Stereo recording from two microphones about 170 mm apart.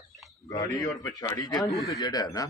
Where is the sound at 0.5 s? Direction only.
20° left (ahead or behind).